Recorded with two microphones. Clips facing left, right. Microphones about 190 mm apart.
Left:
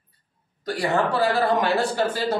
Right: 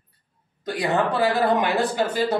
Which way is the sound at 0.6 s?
20° right (ahead or behind).